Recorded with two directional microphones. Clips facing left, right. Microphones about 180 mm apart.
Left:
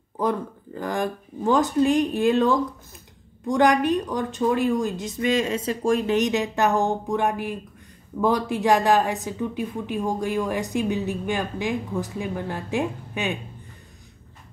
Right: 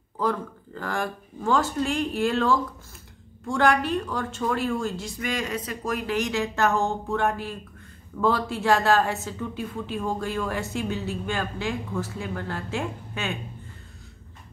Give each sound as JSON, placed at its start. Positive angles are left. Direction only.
{"t": 0.2, "sound": "a woman's voice", "side_deg": 20}